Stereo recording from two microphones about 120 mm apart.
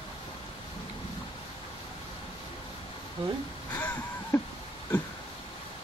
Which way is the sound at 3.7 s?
15° left (ahead or behind).